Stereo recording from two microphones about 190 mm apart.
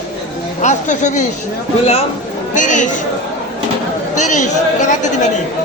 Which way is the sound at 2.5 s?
40° left (ahead or behind).